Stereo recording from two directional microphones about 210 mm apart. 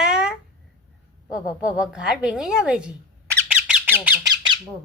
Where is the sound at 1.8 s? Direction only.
5° right (ahead or behind).